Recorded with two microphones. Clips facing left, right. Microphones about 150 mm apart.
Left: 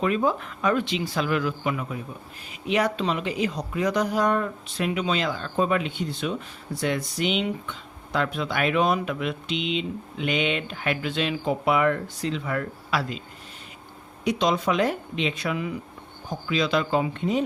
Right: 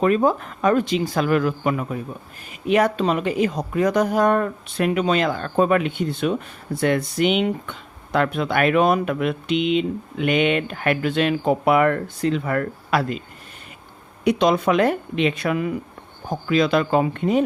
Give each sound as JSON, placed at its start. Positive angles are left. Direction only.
{"t": 0.0, "sound": "a woman's voice", "side_deg": -45}
{"t": 14.3, "sound": "a woman's voice", "side_deg": -55}